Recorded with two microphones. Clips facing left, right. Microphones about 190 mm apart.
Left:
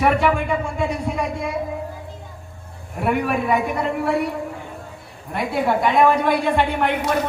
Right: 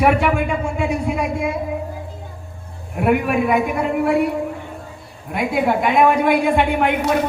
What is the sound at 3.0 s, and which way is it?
A woman's voice, 10° right (ahead or behind).